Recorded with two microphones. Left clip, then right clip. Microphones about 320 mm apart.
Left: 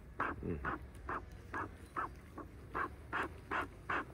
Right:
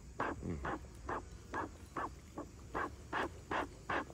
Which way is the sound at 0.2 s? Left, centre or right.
Right.